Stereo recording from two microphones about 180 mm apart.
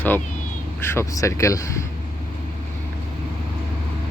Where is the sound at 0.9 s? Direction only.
15° left (ahead or behind).